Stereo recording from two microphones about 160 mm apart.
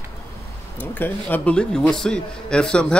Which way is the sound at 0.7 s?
10° left (ahead or behind).